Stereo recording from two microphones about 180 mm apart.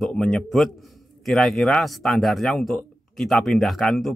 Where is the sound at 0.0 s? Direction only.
5° left (ahead or behind).